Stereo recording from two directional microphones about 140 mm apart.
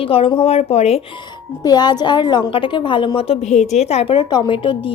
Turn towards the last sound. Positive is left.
turn(degrees=40)  # may be behind; listen again after turning